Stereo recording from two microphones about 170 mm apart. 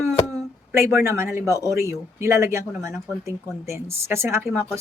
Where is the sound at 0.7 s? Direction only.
15° right (ahead or behind).